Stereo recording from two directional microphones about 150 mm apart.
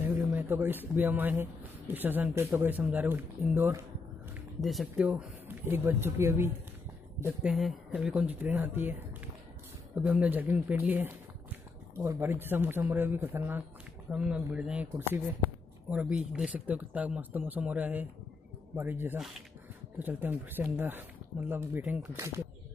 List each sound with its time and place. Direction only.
0.0 s speech: 10° right (ahead or behind)
4.6 s speech: centre (ahead or behind); by 6.5 s 15° right (ahead or behind)
7.4 s speech: centre (ahead or behind); by 22.3 s 20° right (ahead or behind)